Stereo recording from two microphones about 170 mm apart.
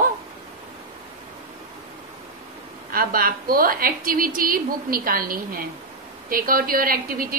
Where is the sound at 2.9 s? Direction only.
60° right (ahead or behind).